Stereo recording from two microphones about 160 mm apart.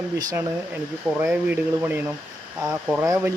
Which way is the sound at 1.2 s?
10° right (ahead or behind).